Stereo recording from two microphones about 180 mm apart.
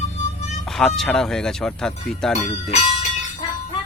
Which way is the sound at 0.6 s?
Centre (ahead or behind).